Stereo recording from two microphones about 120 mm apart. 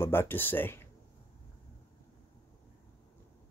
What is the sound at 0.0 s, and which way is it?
Speech, 20° left (ahead or behind).